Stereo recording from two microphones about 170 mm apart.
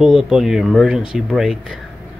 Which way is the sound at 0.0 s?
5° right (ahead or behind).